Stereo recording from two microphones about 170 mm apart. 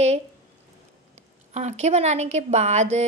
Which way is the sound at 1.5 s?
40° right (ahead or behind).